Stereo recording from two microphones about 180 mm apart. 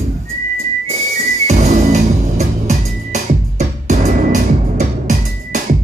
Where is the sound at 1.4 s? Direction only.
35° right (ahead or behind).